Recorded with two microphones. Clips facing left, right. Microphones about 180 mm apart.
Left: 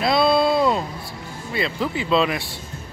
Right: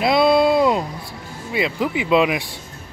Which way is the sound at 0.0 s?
15° right (ahead or behind).